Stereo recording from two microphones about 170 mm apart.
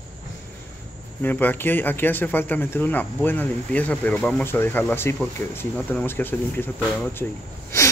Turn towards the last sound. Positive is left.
turn(degrees=15)  # may be behind; listen again after turning